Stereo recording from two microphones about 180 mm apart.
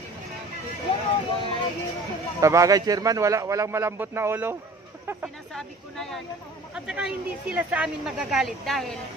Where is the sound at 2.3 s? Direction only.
15° right (ahead or behind).